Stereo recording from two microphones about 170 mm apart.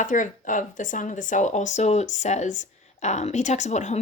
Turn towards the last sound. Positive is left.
turn(degrees=40)  # may be behind; listen again after turning